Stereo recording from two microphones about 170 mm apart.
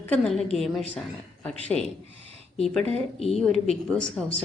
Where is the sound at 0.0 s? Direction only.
5° left (ahead or behind).